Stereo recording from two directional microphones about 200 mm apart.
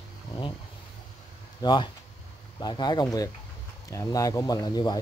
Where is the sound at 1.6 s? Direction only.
20° left (ahead or behind).